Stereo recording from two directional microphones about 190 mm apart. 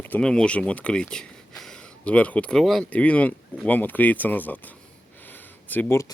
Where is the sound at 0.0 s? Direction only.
5° left (ahead or behind).